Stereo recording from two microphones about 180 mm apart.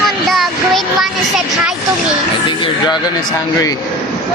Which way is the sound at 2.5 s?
25° left (ahead or behind).